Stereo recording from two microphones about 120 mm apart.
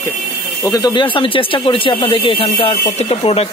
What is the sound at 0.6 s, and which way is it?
Speech, 30° left (ahead or behind).